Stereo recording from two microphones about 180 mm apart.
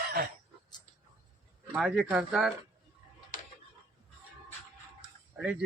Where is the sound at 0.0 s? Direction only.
55° right (ahead or behind).